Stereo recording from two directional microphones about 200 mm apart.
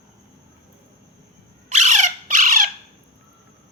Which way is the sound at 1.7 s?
35° right (ahead or behind).